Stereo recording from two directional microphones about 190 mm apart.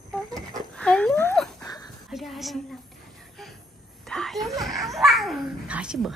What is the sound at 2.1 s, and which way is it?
Speech, centre (ahead or behind).